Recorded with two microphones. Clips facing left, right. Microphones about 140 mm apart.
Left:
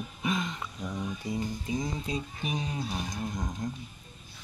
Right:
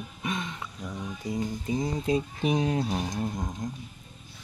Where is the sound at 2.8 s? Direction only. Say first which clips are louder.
Right 5 dB; 40° right (ahead or behind).